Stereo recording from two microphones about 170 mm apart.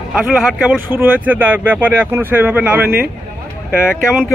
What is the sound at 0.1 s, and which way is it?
Speech, 5° right (ahead or behind).